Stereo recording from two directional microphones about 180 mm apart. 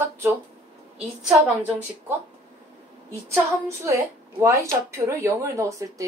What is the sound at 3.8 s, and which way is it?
Speech, 15° right (ahead or behind).